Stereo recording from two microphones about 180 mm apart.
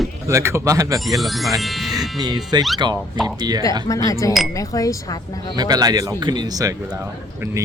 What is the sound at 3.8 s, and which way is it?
Speech, 20° left (ahead or behind).